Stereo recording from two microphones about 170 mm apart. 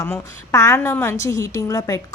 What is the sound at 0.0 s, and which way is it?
A woman's voice, 20° left (ahead or behind).